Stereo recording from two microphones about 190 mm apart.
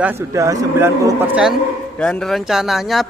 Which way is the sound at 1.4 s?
Centre (ahead or behind).